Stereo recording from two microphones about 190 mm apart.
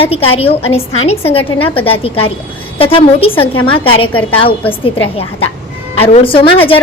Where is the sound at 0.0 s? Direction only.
30° left (ahead or behind).